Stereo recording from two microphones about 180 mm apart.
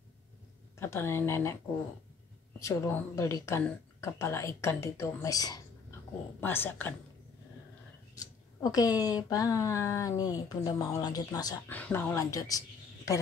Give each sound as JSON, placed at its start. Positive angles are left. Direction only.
{"t": 0.7, "sound": "speech", "side_deg": 15}
{"t": 2.6, "sound": "speech", "side_deg": 15}
{"t": 8.2, "sound": "speech", "side_deg": 20}
{"t": 11.7, "sound": "speech", "side_deg": 10}